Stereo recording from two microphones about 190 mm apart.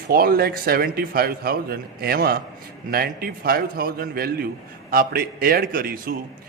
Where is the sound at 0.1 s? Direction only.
50° right (ahead or behind).